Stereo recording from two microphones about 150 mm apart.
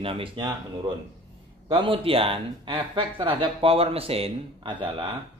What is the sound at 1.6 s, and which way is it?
Speech, 35° right (ahead or behind).